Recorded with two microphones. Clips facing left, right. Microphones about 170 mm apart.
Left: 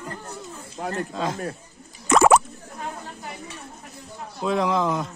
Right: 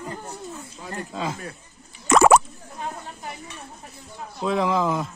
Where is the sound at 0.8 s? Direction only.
90° left.